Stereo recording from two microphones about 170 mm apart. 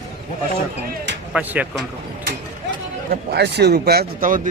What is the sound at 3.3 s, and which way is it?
Speech, 75° right (ahead or behind).